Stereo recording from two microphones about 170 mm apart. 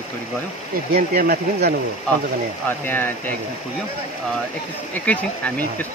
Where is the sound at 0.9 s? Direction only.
60° right (ahead or behind).